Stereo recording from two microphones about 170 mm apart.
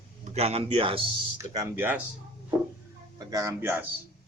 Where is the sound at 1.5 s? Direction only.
20° right (ahead or behind).